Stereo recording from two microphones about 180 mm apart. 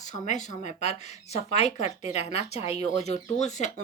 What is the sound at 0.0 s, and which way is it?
A woman's voice, 40° left (ahead or behind).